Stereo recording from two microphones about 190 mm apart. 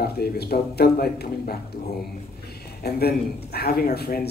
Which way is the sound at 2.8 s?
55° left (ahead or behind).